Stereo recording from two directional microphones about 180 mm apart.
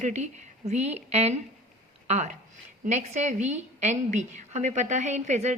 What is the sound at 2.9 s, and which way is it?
A woman's voice, 40° right (ahead or behind).